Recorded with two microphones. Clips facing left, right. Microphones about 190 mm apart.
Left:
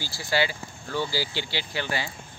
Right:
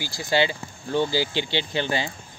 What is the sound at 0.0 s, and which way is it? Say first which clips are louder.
Speech: right 4 dB; 20° right (ahead or behind).